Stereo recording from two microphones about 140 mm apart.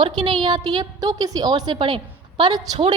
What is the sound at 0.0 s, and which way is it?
A woman's voice, 30° right (ahead or behind).